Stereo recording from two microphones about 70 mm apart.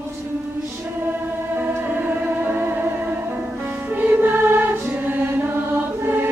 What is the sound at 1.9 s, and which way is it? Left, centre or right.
Music, right.